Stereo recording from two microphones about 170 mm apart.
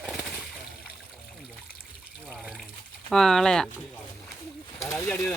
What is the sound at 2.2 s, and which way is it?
Water, 5° right (ahead or behind).